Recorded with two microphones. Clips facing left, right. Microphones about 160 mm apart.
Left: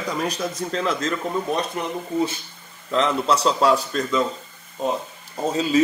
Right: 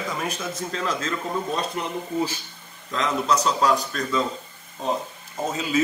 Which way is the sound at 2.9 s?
30° left (ahead or behind).